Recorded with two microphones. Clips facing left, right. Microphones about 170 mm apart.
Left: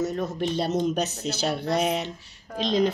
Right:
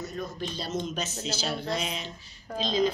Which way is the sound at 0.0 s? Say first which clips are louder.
Left 8 dB; 80° left.